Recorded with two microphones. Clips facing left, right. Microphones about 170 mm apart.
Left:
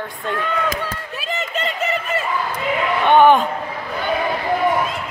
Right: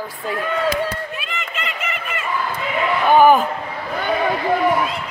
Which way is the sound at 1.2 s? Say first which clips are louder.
Left 5 dB; 40° left (ahead or behind).